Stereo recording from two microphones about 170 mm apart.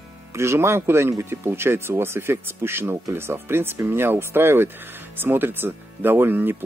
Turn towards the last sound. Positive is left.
turn(degrees=-10)  # may be behind; listen again after turning